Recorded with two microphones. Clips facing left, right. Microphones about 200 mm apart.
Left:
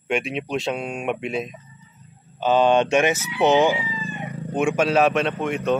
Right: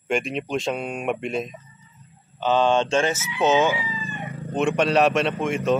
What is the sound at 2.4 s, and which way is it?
Speech, 15° left (ahead or behind).